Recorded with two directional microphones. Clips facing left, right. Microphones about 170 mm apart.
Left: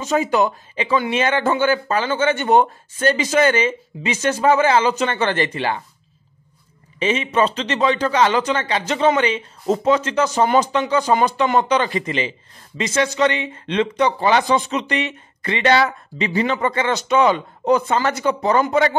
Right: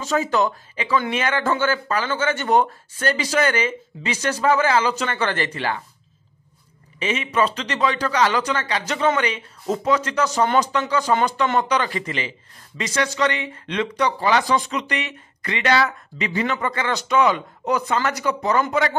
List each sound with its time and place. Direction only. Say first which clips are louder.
0.0 s speech: left 3 dB; 20° left (ahead or behind)
7.0 s speech: left 3 dB; 30° left (ahead or behind)